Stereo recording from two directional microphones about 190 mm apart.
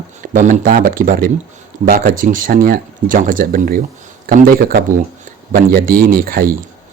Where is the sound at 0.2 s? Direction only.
40° right (ahead or behind).